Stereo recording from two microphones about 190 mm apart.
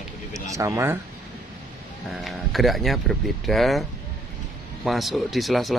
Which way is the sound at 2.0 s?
Centre (ahead or behind).